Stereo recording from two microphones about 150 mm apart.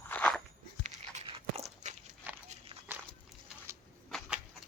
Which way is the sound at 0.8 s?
45° right (ahead or behind).